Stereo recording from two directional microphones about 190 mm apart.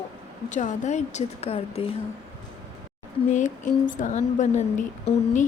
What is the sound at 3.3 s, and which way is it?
A woman's voice, 40° left (ahead or behind).